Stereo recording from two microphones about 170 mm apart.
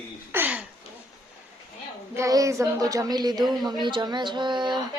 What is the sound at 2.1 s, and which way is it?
Speech, 20° right (ahead or behind).